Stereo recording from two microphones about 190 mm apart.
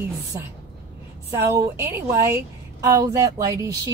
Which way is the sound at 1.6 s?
15° right (ahead or behind).